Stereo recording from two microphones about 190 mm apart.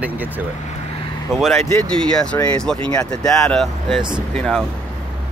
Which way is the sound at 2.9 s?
20° left (ahead or behind).